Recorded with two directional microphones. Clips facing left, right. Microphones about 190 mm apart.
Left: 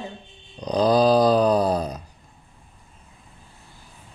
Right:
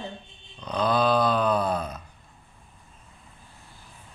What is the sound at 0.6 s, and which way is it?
Speech, 35° left (ahead or behind).